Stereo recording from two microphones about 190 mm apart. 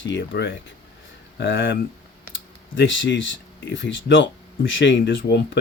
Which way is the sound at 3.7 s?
75° left (ahead or behind).